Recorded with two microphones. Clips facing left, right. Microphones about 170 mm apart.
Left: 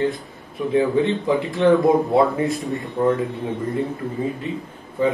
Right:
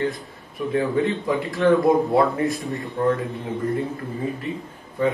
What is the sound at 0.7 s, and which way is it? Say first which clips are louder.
Speech: left 3 dB; 20° left (ahead or behind).